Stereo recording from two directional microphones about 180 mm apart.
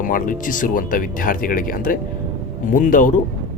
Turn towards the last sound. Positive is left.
turn(degrees=50)  # may be behind; listen again after turning